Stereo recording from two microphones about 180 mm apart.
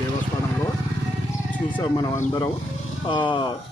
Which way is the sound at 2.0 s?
20° left (ahead or behind).